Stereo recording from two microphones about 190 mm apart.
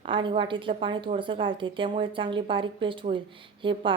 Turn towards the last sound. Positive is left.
turn(degrees=-25)  # may be behind; listen again after turning